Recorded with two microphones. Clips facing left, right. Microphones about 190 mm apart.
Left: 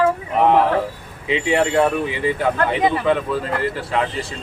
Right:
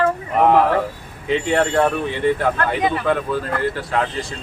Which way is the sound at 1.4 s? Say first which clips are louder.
Left 1 dB; 5° left (ahead or behind).